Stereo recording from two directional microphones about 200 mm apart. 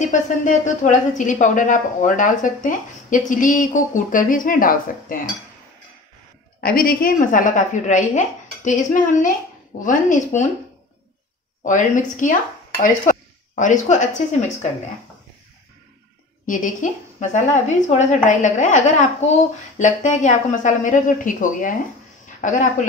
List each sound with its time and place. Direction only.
0.1 s a woman's voice: 40° left (ahead or behind)
6.6 s a woman's voice: 45° left (ahead or behind)
11.6 s a woman's voice: 40° left (ahead or behind)
13.6 s a woman's voice: 40° left (ahead or behind)
16.4 s a woman's voice: 40° left (ahead or behind)